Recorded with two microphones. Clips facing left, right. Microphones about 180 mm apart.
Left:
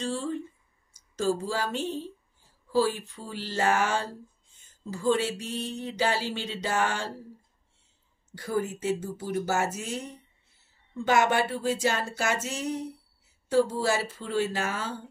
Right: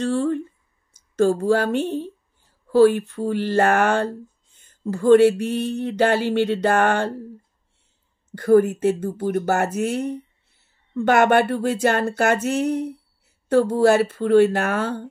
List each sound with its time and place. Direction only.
0.0 s speech: 60° right (ahead or behind)
8.3 s speech: 60° right (ahead or behind)